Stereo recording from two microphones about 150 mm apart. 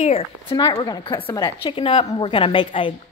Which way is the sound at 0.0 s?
40° left (ahead or behind).